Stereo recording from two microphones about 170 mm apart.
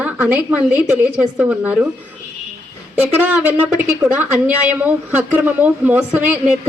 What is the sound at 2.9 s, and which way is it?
Speech, 10° right (ahead or behind).